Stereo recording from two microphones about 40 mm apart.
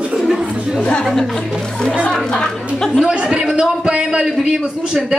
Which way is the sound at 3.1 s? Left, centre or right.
Right.